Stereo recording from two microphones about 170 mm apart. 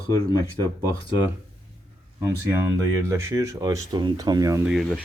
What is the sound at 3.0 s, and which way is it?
Speech, 15° right (ahead or behind).